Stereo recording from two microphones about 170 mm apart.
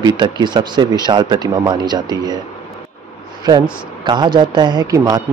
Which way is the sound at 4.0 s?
25° right (ahead or behind).